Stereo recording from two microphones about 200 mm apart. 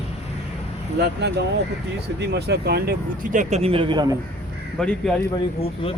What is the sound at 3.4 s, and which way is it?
Speech, 30° right (ahead or behind).